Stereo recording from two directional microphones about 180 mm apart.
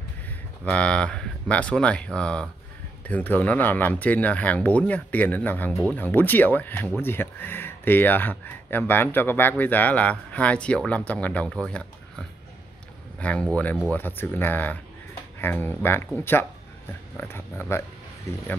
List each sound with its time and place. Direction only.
0.7 s speech: 5° left (ahead or behind)
13.2 s speech: 5° left (ahead or behind)
17.2 s speech: 15° left (ahead or behind)